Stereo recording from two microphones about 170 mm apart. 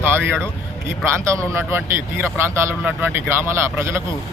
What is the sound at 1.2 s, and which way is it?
A man's voice, 15° right (ahead or behind).